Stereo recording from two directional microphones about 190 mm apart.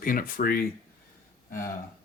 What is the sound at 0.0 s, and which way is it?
Speech, 50° left (ahead or behind).